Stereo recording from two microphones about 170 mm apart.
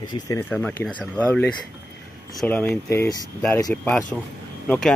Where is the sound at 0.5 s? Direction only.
5° left (ahead or behind).